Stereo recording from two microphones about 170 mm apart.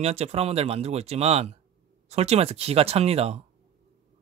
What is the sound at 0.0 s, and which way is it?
Speech, 40° right (ahead or behind).